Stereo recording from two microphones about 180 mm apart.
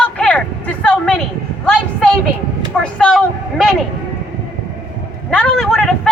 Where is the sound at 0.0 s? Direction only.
5° left (ahead or behind).